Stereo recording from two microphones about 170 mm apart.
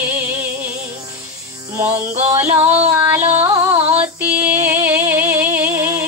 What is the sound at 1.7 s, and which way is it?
Music, 15° right (ahead or behind).